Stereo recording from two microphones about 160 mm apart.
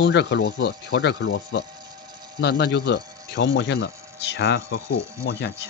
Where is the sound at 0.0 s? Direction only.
90° left.